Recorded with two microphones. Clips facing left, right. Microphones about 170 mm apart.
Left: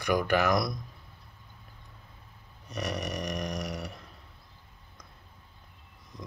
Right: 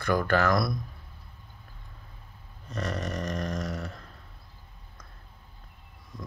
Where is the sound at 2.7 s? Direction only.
20° left (ahead or behind).